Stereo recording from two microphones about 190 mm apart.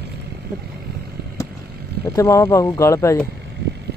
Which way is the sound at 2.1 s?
15° left (ahead or behind).